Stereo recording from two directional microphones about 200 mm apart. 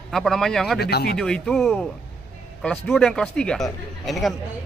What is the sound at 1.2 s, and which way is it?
Speech, 5° left (ahead or behind).